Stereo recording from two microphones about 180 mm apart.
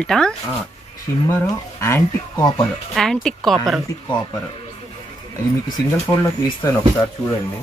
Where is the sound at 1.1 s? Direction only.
15° left (ahead or behind).